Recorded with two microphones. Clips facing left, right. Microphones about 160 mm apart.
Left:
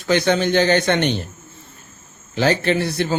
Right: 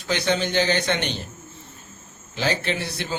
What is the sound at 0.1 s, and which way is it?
Speech, 55° left (ahead or behind).